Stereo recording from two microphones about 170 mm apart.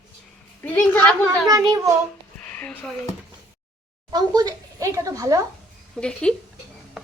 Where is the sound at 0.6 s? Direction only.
10° left (ahead or behind).